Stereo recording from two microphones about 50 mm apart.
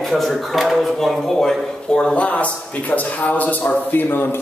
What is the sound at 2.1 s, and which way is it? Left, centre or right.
A man's voice, left.